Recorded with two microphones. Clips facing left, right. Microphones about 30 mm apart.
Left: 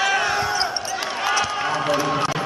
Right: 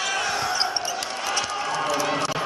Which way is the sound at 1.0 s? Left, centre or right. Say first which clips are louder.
Left 5 dB; centre.